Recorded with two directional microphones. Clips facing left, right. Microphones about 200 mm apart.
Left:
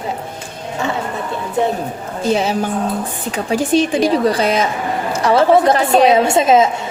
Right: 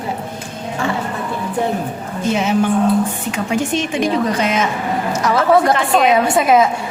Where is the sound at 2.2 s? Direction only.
35° left (ahead or behind).